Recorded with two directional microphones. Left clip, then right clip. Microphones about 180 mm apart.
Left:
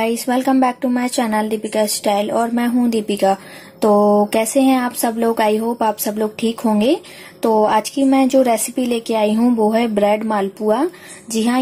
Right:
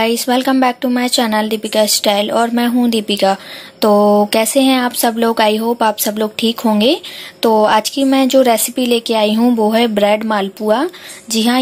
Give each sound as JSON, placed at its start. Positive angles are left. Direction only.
{"t": 0.0, "sound": "speech", "side_deg": 0}
{"t": 4.0, "sound": "a sound", "side_deg": -15}
{"t": 4.3, "sound": "speech", "side_deg": 0}